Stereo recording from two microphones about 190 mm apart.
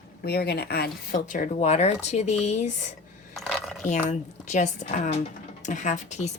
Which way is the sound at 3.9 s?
40° left (ahead or behind).